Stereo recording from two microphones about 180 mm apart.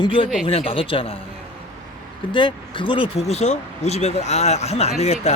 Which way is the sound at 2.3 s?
25° left (ahead or behind).